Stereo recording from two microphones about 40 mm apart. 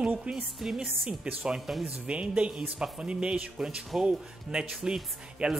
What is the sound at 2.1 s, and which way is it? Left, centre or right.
Speech, right.